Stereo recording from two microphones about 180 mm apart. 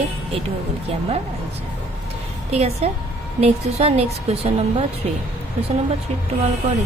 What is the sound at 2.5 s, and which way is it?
A woman's voice, 35° right (ahead or behind).